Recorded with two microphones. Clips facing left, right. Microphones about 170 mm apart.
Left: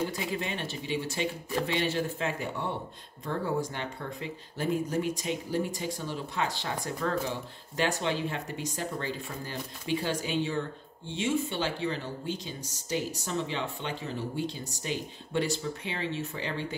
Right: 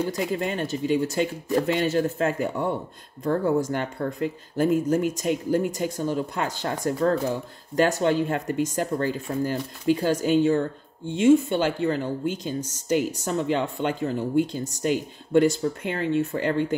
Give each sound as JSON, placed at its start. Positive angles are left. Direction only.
{"t": 0.2, "sound": "speech", "side_deg": -45}